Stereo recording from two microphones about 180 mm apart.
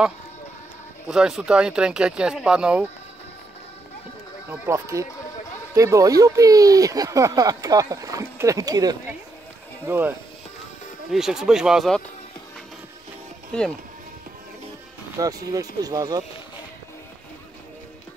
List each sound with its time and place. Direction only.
1.0 s speech: 5° right (ahead or behind)
4.5 s speech: 15° right (ahead or behind)
9.8 s speech: 10° right (ahead or behind)
13.5 s speech: 5° left (ahead or behind)
15.1 s speech: 20° right (ahead or behind)